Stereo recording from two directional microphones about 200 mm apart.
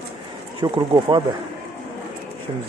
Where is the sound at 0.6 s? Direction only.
25° right (ahead or behind).